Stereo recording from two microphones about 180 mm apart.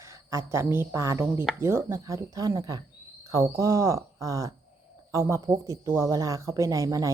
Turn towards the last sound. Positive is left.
turn(degrees=-20)  # may be behind; listen again after turning